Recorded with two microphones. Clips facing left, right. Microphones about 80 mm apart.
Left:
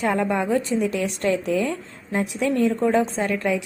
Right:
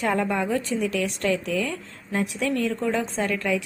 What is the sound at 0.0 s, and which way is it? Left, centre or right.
Speech, centre.